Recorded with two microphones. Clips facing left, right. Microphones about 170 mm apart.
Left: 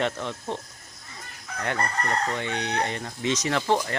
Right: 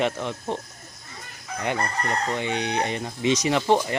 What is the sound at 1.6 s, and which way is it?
Speech, 10° right (ahead or behind).